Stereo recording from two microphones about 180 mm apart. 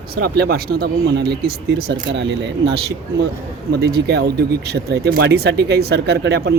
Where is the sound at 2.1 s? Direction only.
80° right.